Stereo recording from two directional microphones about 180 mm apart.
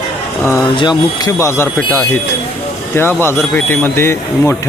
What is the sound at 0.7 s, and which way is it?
Speech, 25° left (ahead or behind).